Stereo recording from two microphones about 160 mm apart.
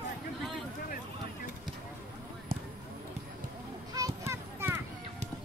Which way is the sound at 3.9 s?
20° right (ahead or behind).